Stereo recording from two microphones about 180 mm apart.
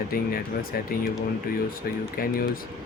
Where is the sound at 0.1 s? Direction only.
55° left (ahead or behind).